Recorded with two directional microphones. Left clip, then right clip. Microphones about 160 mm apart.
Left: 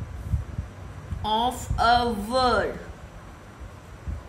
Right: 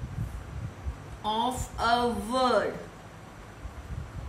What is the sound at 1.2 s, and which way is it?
A man's voice, 45° left (ahead or behind).